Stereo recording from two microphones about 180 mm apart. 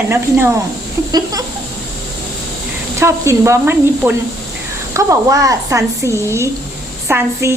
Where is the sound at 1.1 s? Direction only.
20° right (ahead or behind).